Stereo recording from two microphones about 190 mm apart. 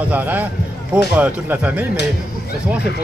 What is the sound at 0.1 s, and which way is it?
Speech, 10° right (ahead or behind).